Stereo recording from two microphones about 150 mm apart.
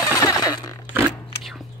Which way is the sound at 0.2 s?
25° left (ahead or behind).